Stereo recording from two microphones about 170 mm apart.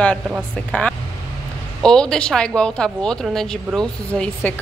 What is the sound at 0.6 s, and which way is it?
A woman's voice, 5° left (ahead or behind).